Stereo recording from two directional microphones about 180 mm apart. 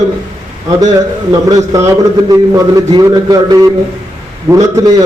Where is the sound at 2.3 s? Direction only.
20° right (ahead or behind).